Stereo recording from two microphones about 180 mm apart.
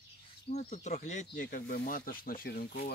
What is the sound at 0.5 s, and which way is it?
Speech, 40° left (ahead or behind).